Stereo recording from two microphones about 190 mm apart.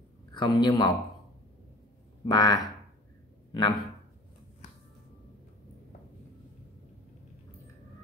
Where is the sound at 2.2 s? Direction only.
20° left (ahead or behind).